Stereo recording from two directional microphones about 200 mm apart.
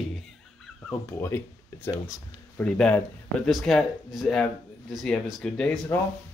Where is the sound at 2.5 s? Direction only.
5° left (ahead or behind).